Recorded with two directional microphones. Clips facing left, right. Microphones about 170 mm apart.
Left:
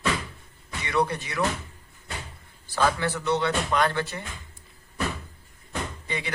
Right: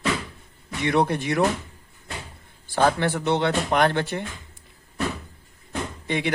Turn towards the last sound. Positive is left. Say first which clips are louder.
# right 7 dB
turn(degrees=-65)  # may be behind; listen again after turning